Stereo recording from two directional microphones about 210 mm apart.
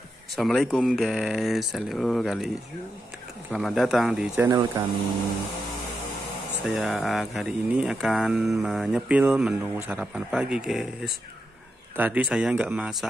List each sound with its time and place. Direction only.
0.4 s speech: centre (ahead or behind)
3.5 s speech: centre (ahead or behind)
6.6 s speech: centre (ahead or behind)